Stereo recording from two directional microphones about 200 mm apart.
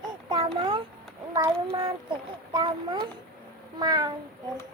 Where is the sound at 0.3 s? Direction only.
25° right (ahead or behind).